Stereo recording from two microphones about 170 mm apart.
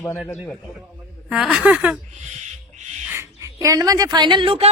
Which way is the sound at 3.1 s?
15° right (ahead or behind).